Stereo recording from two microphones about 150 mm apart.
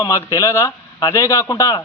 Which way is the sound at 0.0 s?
20° left (ahead or behind).